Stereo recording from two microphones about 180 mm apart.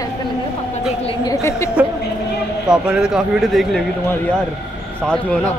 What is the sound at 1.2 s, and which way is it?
Speech, 20° left (ahead or behind).